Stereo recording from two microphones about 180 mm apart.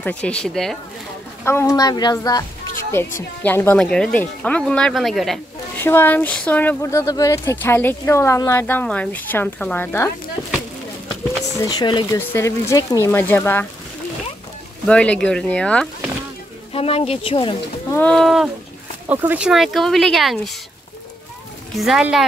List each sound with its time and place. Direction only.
0.0 s speech: 5° left (ahead or behind)
1.4 s a woman's voice: 15° left (ahead or behind)
5.8 s speech: 10° left (ahead or behind)
11.5 s a woman's voice: 20° left (ahead or behind)
12.2 s speech: 15° left (ahead or behind)
14.9 s speech: 5° left (ahead or behind)
16.7 s speech: 35° left (ahead or behind)
17.9 s speech: 5° left (ahead or behind)
21.7 s speech: centre (ahead or behind)